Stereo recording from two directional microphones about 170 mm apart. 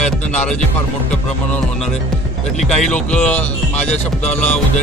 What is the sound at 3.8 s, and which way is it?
Music, 40° left (ahead or behind).